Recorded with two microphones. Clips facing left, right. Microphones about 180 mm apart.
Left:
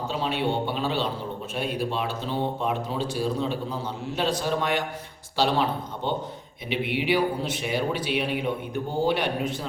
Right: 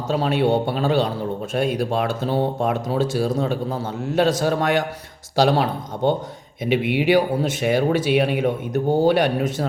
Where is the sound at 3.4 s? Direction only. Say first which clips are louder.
Right 5 dB; 45° right (ahead or behind).